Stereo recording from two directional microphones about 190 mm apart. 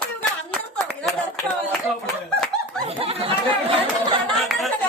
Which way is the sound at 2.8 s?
30° right (ahead or behind).